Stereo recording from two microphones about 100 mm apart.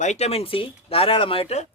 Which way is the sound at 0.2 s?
90° left.